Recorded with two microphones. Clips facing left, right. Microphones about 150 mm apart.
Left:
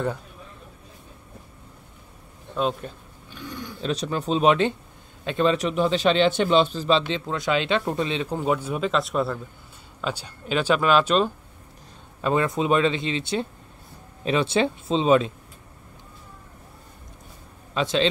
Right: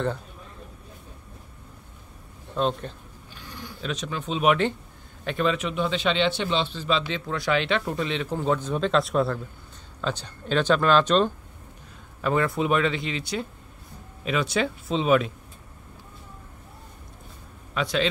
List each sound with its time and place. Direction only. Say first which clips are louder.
2.5 s speech: even; 5° left (ahead or behind)
3.8 s a man's voice: left 5 dB; 35° left (ahead or behind)
5.5 s speech: left 4 dB; 35° left (ahead or behind)
7.1 s speech: left 1 dB; 20° left (ahead or behind)
12.2 s speech: left 1 dB; 20° left (ahead or behind)
17.7 s speech: left 2 dB; 25° left (ahead or behind)